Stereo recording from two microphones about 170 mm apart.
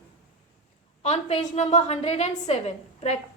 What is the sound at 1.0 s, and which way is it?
A woman's voice, 40° left (ahead or behind).